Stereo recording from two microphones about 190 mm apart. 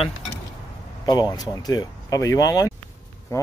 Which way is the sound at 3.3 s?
15° left (ahead or behind).